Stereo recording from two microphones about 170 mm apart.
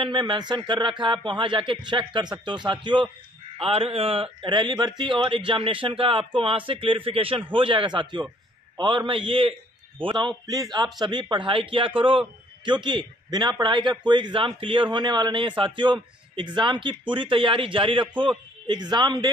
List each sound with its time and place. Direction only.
0.0 s a man's voice: 30° right (ahead or behind)